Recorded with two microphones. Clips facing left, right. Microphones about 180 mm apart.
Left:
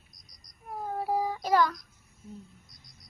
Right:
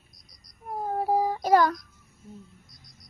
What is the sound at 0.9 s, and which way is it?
Child singing, 40° right (ahead or behind).